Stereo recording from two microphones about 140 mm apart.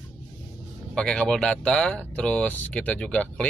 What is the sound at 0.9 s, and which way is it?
Speech, 5° left (ahead or behind).